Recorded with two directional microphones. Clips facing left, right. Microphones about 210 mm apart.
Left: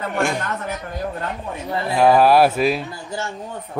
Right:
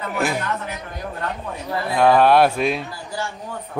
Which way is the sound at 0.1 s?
5° right (ahead or behind).